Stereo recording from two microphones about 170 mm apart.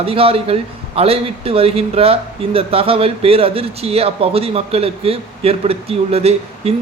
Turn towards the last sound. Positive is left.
turn(degrees=-35)  # may be behind; listen again after turning